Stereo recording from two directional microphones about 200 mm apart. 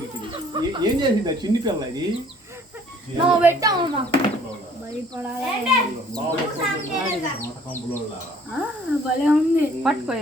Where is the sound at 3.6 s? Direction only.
20° right (ahead or behind).